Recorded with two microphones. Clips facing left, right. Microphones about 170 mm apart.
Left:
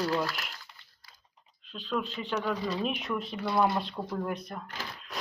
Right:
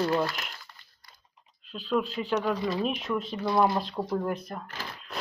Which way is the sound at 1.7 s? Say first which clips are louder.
Right 5 dB; 5° right (ahead or behind).